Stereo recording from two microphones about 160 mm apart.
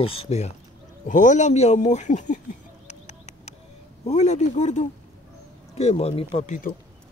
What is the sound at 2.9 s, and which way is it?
Bird, 45° left (ahead or behind).